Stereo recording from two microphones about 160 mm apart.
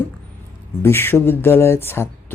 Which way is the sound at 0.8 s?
15° left (ahead or behind).